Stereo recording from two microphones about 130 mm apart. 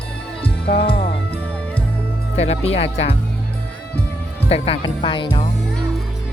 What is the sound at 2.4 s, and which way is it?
Music, 55° left (ahead or behind).